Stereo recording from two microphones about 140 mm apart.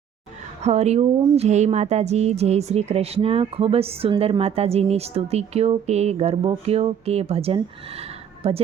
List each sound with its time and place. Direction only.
0.6 s speech: 50° right (ahead or behind)